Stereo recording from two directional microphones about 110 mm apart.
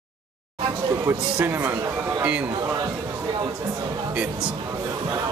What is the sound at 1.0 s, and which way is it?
Speech, 20° right (ahead or behind).